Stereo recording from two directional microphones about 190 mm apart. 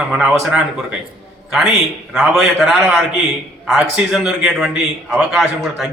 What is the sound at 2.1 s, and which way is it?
A man's voice, centre (ahead or behind).